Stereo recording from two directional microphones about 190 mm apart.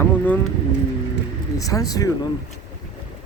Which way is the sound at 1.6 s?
20° left (ahead or behind).